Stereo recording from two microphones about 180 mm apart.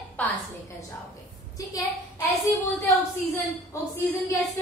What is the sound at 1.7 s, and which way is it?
A woman's voice, 15° left (ahead or behind).